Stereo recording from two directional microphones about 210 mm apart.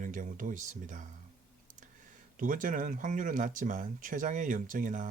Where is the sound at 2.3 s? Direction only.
40° right (ahead or behind).